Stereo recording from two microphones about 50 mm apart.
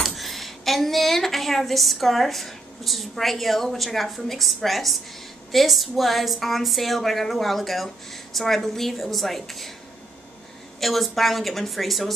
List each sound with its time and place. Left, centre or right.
0.0 s a woman's voice: centre
10.8 s a woman's voice: centre